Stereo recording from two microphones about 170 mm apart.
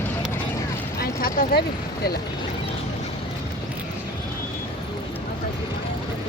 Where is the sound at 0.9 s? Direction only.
60° left (ahead or behind).